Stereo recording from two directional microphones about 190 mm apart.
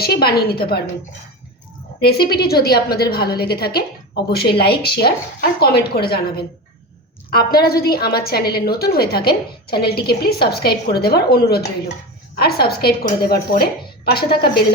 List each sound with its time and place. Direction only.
0.0 s a woman's voice: 55° left (ahead or behind)
2.2 s a woman's voice: 55° left (ahead or behind)